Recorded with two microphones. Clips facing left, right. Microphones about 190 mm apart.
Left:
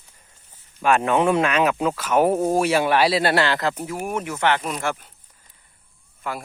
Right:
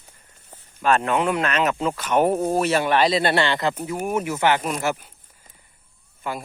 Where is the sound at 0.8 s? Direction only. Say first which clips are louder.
Left 2 dB; 15° left (ahead or behind); by 5.1 s 5° right (ahead or behind).